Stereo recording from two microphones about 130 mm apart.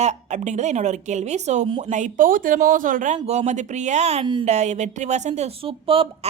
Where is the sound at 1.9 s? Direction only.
80° right.